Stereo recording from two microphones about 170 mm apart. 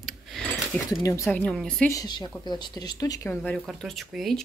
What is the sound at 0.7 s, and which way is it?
Speech, 10° left (ahead or behind).